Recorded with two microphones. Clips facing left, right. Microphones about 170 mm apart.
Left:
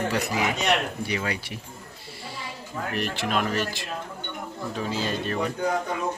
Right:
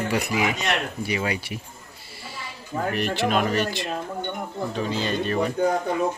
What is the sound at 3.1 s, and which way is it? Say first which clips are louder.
Speech: right 4 dB; centre (ahead or behind).